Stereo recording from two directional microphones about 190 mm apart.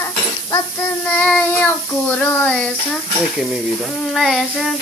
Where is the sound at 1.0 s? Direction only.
5° left (ahead or behind).